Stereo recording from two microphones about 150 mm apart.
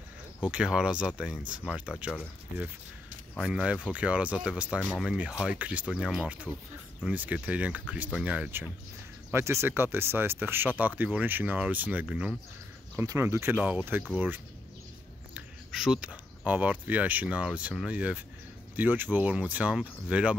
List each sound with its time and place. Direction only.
0.4 s speech: 5° right (ahead or behind)
3.3 s speech: 5° right (ahead or behind)
15.3 s speech: centre (ahead or behind)